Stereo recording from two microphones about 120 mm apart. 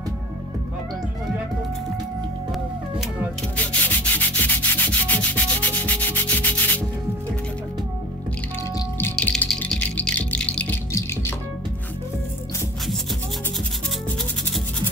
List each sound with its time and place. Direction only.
3.5 s rub: 15° left (ahead or behind)
9.1 s music: 10° left (ahead or behind)
10.9 s music: 25° left (ahead or behind)